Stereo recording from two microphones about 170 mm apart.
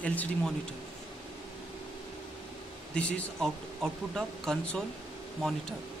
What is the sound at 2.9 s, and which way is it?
Speech, 5° left (ahead or behind).